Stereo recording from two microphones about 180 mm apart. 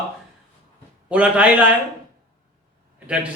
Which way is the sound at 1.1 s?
5° right (ahead or behind).